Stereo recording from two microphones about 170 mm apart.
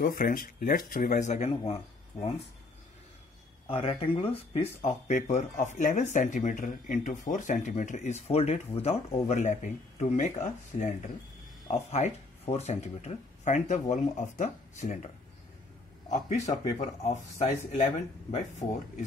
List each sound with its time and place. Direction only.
0.0 s speech: 55° left (ahead or behind)
3.6 s speech: 35° left (ahead or behind)
11.9 s speech: 40° left (ahead or behind)
16.1 s speech: 40° left (ahead or behind)